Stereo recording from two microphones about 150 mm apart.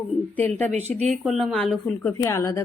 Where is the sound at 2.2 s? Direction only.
20° left (ahead or behind).